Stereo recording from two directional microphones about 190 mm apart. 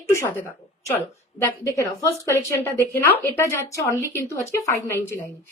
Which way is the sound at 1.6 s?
15° left (ahead or behind).